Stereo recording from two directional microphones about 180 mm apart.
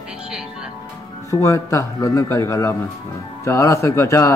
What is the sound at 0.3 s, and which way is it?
Speech, 5° right (ahead or behind).